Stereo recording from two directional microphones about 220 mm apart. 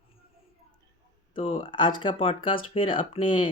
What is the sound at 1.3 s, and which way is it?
Speech, 25° left (ahead or behind).